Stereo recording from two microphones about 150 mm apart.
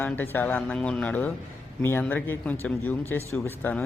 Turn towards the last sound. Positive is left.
turn(degrees=10)  # may be behind; listen again after turning